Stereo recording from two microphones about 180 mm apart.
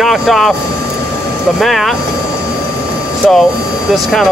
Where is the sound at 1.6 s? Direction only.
Centre (ahead or behind).